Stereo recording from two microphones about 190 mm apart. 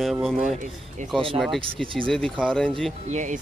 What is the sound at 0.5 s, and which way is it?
Speech, 40° right (ahead or behind).